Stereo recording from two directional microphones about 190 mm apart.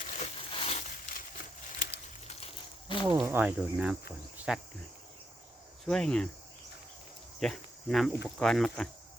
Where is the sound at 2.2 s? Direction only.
30° left (ahead or behind).